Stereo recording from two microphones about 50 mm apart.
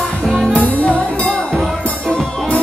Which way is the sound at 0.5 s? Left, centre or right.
Left.